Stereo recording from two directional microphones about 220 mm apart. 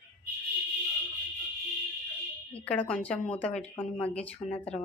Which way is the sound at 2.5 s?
5° left (ahead or behind).